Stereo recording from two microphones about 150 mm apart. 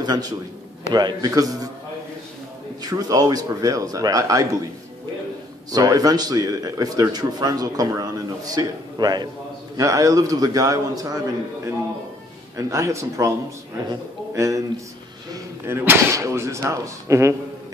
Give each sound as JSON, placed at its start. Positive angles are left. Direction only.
{"t": 0.0, "sound": "a man's voice", "side_deg": -25}
{"t": 2.8, "sound": "a man's voice", "side_deg": -25}
{"t": 5.7, "sound": "a man's voice", "side_deg": -25}
{"t": 12.5, "sound": "a man's voice", "side_deg": -20}